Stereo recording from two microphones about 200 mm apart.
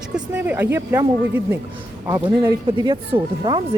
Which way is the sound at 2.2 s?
25° right (ahead or behind).